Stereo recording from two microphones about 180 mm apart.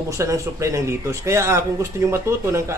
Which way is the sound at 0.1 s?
15° right (ahead or behind).